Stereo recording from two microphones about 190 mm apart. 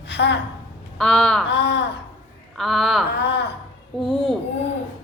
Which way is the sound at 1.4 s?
65° left (ahead or behind).